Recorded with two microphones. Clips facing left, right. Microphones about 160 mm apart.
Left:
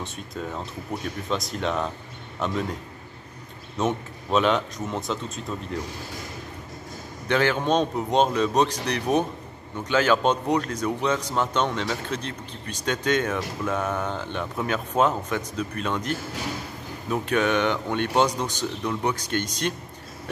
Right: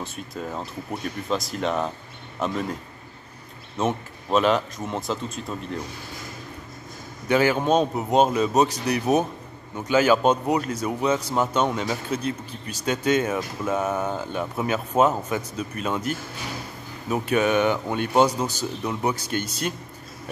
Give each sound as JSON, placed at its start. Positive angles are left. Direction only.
{"t": 0.0, "sound": "a man's voice", "side_deg": -5}
{"t": 3.7, "sound": "a man's voice", "side_deg": 0}
{"t": 7.2, "sound": "speech", "side_deg": -10}